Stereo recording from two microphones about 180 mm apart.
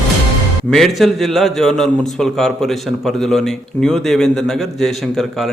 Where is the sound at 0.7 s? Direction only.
Centre (ahead or behind).